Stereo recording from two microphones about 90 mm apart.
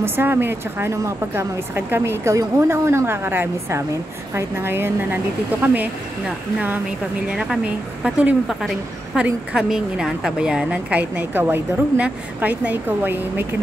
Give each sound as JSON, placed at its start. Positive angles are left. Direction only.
{"t": 0.0, "sound": "a woman's voice", "side_deg": -25}
{"t": 7.2, "sound": "a woman's voice", "side_deg": -10}
{"t": 8.5, "sound": "a woman's voice", "side_deg": -5}